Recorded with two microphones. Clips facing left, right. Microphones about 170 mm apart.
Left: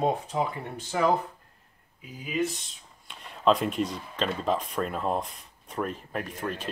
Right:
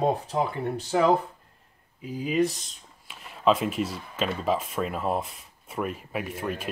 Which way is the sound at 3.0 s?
5° right (ahead or behind).